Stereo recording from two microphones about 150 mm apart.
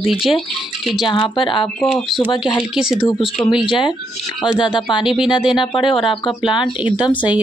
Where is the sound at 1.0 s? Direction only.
35° left (ahead or behind).